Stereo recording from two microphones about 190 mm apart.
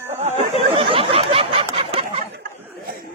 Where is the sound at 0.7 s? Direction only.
30° right (ahead or behind).